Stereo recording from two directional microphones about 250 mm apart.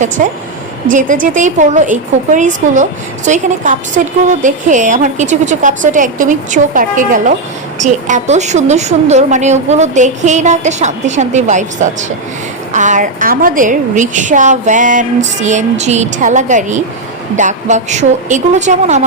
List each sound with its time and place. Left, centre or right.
0.2 s a woman's voice: right